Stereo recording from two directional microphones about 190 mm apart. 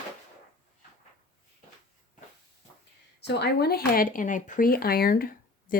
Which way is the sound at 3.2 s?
60° left (ahead or behind).